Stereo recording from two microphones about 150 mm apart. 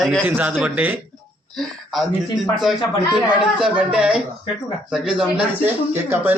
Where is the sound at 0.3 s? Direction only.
10° right (ahead or behind).